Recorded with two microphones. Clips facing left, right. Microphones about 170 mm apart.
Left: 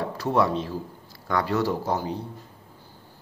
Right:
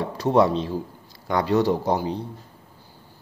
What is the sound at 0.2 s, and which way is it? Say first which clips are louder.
Speech: right 5 dB; 20° right (ahead or behind).